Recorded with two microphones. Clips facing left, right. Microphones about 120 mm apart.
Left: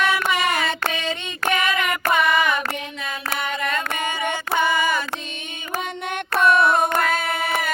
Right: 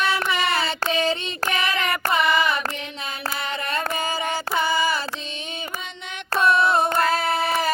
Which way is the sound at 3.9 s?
35° right (ahead or behind).